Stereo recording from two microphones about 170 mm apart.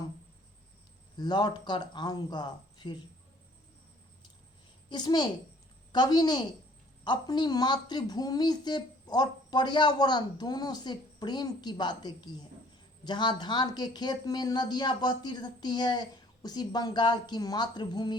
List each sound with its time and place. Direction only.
1.1 s speech: 25° left (ahead or behind)
4.9 s speech: 25° left (ahead or behind)